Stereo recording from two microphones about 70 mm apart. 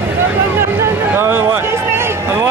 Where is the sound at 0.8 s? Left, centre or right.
Right.